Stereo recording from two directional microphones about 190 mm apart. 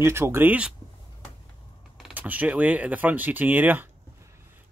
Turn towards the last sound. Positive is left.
turn(degrees=-10)  # may be behind; listen again after turning